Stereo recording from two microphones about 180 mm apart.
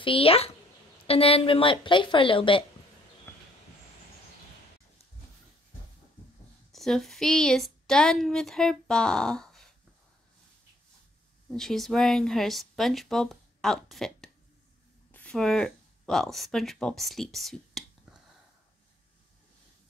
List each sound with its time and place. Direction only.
0.0 s a woman's voice: 30° left (ahead or behind)
3.3 s a sound: 15° left (ahead or behind)
6.7 s a woman's voice: centre (ahead or behind)
11.4 s speech: centre (ahead or behind)